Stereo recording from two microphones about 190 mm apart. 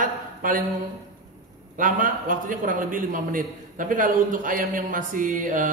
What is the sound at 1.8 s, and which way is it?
A man's voice, 45° right (ahead or behind).